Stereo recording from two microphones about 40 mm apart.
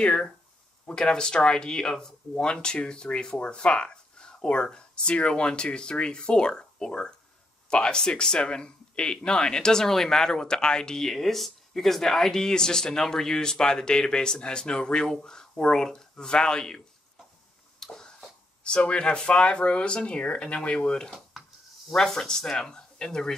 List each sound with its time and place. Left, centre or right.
0.8 s speech: left
17.7 s a sound: centre
18.6 s speech: left